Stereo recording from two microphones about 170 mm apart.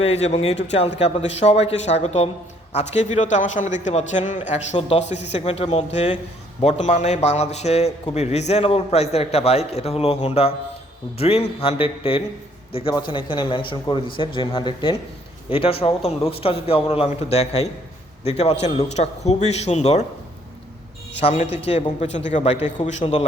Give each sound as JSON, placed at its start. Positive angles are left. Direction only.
{"t": 0.0, "sound": "a man's voice", "side_deg": 40}
{"t": 21.2, "sound": "a man's voice", "side_deg": 35}